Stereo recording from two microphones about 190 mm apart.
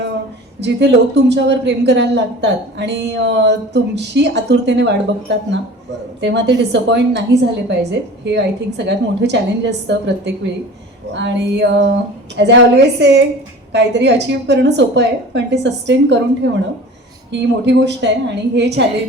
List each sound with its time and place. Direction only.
0.6 s speech: 65° right (ahead or behind)